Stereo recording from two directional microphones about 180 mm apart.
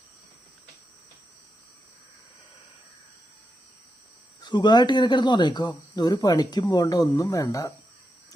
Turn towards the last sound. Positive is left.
turn(degrees=20)  # may be behind; listen again after turning